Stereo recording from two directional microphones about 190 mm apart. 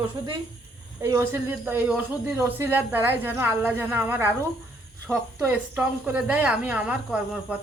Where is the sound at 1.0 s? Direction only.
15° right (ahead or behind).